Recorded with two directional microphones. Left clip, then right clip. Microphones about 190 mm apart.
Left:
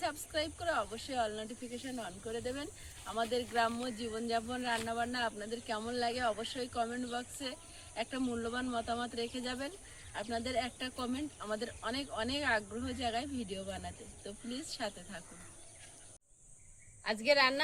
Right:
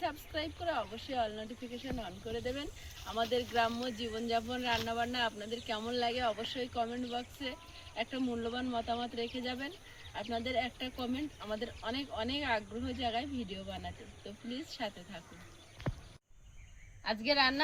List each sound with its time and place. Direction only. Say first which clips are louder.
0.0 s speech: left 1 dB; 5° left (ahead or behind)
17.0 s a woman's voice: left 1 dB; 45° left (ahead or behind)